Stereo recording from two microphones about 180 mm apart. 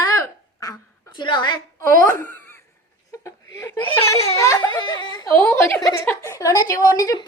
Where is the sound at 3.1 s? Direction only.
20° left (ahead or behind).